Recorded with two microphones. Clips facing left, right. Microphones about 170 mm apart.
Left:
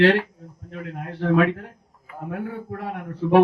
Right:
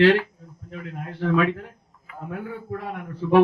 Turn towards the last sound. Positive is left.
turn(degrees=55)  # may be behind; listen again after turning